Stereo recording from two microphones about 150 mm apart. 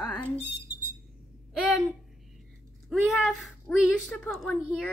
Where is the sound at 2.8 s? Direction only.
Centre (ahead or behind).